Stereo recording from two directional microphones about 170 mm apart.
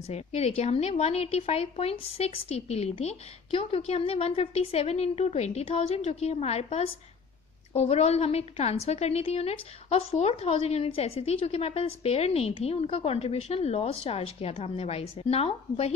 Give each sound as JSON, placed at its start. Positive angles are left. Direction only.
{"t": 0.0, "sound": "a woman's voice", "side_deg": 40}